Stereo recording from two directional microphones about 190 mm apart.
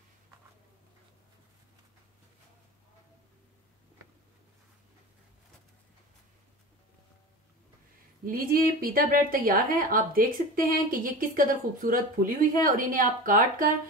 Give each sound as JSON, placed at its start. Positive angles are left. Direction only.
{"t": 8.3, "sound": "a woman's voice", "side_deg": -50}